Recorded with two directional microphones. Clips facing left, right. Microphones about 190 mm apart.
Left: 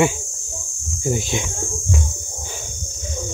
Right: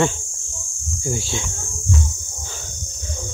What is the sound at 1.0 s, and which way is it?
Cricket, 20° left (ahead or behind).